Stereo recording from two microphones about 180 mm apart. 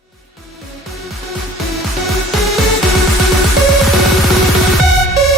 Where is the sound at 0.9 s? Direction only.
Centre (ahead or behind).